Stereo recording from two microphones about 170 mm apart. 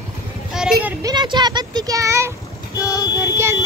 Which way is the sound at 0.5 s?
5° right (ahead or behind).